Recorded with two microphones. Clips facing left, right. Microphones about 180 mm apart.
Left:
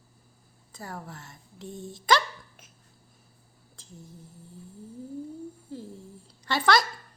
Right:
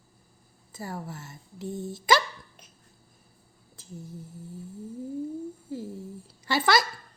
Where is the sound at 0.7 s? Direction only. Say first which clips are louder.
Right 3 dB; 5° right (ahead or behind).